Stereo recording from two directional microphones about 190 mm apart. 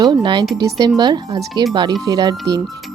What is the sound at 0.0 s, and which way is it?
Speech, 25° right (ahead or behind).